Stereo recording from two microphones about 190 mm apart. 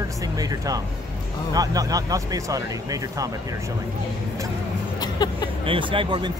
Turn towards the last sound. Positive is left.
turn(degrees=-25)  # may be behind; listen again after turning